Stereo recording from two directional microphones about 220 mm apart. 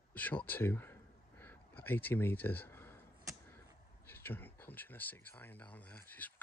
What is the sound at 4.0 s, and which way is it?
Speech, 10° left (ahead or behind).